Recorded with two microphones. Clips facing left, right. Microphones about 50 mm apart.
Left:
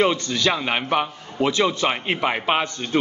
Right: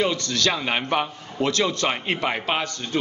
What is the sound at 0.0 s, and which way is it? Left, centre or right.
A man's voice, left.